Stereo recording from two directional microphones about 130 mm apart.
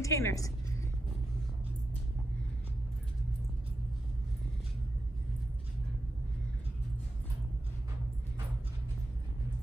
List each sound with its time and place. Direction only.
0.0 s a woman's voice: 25° left (ahead or behind)